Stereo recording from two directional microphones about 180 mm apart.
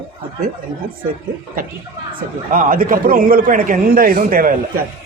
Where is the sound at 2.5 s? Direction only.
50° right (ahead or behind).